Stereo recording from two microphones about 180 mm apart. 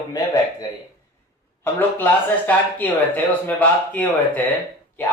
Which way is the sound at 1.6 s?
10° left (ahead or behind).